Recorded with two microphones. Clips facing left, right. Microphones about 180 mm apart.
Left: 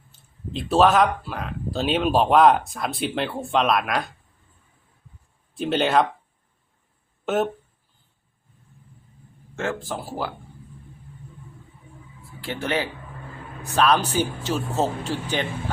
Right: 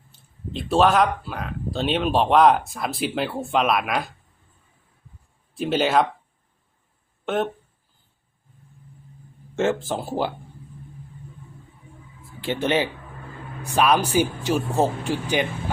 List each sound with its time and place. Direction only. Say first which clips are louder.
0.1 s speech: left 1 dB; centre (ahead or behind)
5.5 s speech: even; centre (ahead or behind)
9.6 s speech: right 5 dB; 25° right (ahead or behind)
12.4 s speech: right 4 dB; 20° right (ahead or behind)